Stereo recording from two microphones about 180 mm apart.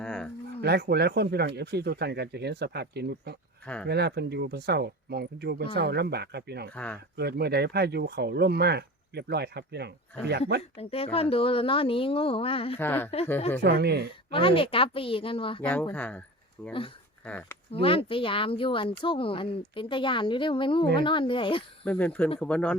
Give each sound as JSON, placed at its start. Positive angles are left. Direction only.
{"t": 0.0, "sound": "a sound", "side_deg": 5}
{"t": 0.6, "sound": "speech", "side_deg": -60}
{"t": 6.7, "sound": "speech", "side_deg": 10}
{"t": 7.2, "sound": "speech", "side_deg": -65}
{"t": 10.8, "sound": "a woman's voice", "side_deg": 35}
{"t": 12.8, "sound": "speech", "side_deg": 10}
{"t": 13.6, "sound": "speech", "side_deg": -65}
{"t": 14.3, "sound": "speech", "side_deg": 30}
{"t": 15.6, "sound": "speech", "side_deg": 10}
{"t": 17.7, "sound": "speech", "side_deg": 30}
{"t": 21.8, "sound": "speech", "side_deg": 10}